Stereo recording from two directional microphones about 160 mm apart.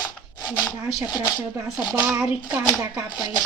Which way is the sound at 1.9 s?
10° right (ahead or behind).